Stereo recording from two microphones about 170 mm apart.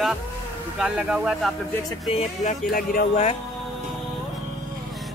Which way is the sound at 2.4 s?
60° left (ahead or behind).